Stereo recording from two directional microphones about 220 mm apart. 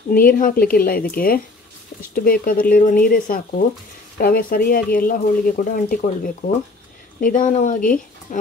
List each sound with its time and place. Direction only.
0.1 s speech: 40° left (ahead or behind)